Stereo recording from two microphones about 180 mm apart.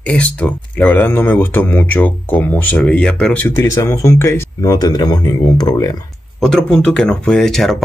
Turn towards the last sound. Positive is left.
turn(degrees=0)  # may be behind; listen again after turning